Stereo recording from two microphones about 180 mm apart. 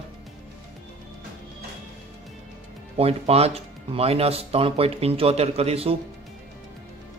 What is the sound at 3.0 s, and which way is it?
Speech, 35° right (ahead or behind).